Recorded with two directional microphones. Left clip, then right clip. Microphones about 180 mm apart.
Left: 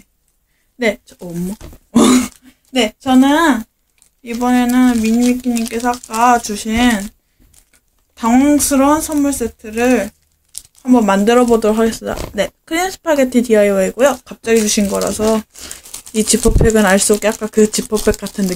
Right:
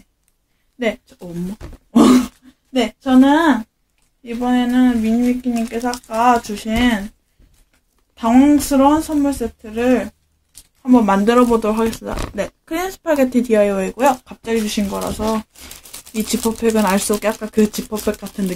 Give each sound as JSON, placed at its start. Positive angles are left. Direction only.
{"t": 0.7, "sound": "speech", "side_deg": 25}
{"t": 1.9, "sound": "speech", "side_deg": 40}
{"t": 8.2, "sound": "speech", "side_deg": 30}
{"t": 15.9, "sound": "a sound", "side_deg": 0}
{"t": 16.6, "sound": "speech", "side_deg": 30}